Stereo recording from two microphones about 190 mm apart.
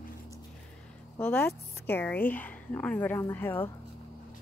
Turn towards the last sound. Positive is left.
turn(degrees=10)  # may be behind; listen again after turning